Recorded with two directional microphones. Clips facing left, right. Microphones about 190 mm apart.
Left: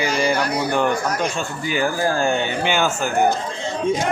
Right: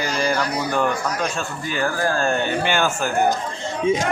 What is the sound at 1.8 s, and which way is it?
Speech, 15° left (ahead or behind).